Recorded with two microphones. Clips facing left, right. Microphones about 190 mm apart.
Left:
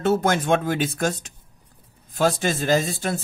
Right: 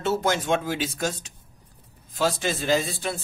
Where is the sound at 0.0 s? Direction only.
55° left (ahead or behind).